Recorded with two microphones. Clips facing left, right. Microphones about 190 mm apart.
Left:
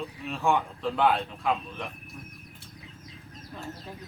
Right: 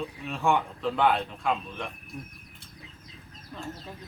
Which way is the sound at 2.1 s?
15° right (ahead or behind).